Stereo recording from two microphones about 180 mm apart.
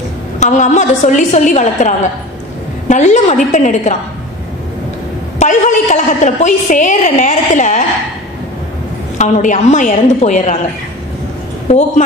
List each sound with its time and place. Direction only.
0.4 s a woman's voice: 40° left (ahead or behind)
5.4 s a woman's voice: 40° left (ahead or behind)
9.2 s a woman's voice: 40° left (ahead or behind)